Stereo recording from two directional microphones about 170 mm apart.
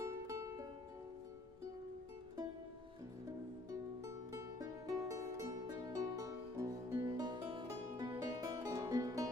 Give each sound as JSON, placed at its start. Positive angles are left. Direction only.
{"t": 0.0, "sound": "music", "side_deg": -20}
{"t": 4.3, "sound": "music", "side_deg": -20}